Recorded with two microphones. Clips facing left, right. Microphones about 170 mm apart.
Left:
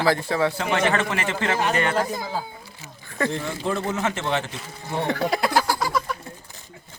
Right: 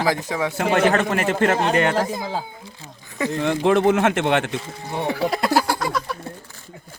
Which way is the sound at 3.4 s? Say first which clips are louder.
Right 9 dB; 70° right (ahead or behind).